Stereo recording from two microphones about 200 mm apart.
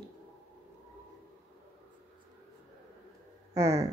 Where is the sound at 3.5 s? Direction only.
20° right (ahead or behind).